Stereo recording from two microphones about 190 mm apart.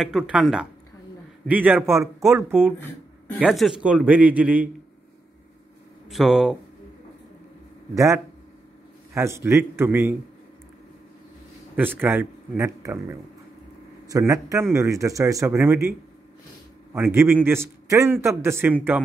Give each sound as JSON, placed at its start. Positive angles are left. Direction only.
{"t": 0.0, "sound": "a man's voice", "side_deg": -5}
{"t": 3.3, "sound": "a man's voice", "side_deg": 0}
{"t": 6.0, "sound": "speech", "side_deg": 0}
{"t": 7.9, "sound": "a man's voice", "side_deg": -15}
{"t": 12.0, "sound": "a man's voice", "side_deg": -10}
{"t": 16.9, "sound": "a man's voice", "side_deg": -15}